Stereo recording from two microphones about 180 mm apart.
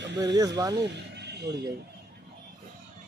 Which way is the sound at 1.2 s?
70° right (ahead or behind).